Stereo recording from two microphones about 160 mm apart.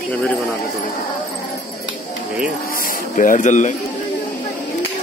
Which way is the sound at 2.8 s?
60° left (ahead or behind).